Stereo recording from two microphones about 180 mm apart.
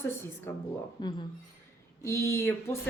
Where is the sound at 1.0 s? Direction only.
25° left (ahead or behind).